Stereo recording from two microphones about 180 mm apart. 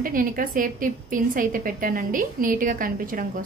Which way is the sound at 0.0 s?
50° right (ahead or behind).